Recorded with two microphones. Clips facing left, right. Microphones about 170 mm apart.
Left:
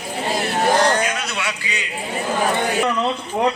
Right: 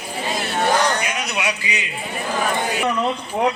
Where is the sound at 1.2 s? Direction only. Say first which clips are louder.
Right 2 dB; 20° right (ahead or behind).